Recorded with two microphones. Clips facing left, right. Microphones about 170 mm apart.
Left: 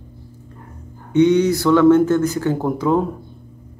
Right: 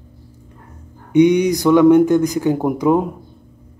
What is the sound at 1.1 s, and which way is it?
Speech, 15° right (ahead or behind).